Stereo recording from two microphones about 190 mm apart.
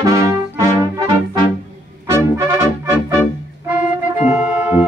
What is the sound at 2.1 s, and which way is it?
Brass instrument, 15° right (ahead or behind).